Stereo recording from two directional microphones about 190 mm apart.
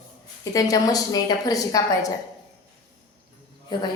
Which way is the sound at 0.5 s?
20° left (ahead or behind).